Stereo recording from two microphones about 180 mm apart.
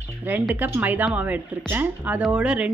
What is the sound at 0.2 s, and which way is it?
Speech, 10° right (ahead or behind).